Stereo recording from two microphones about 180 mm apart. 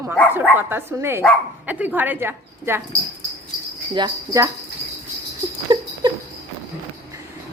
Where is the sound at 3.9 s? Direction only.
20° right (ahead or behind).